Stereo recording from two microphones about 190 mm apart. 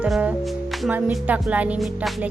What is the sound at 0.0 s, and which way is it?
Speech, 5° right (ahead or behind).